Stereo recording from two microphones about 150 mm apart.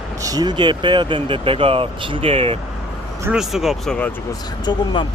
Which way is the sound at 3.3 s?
Centre (ahead or behind).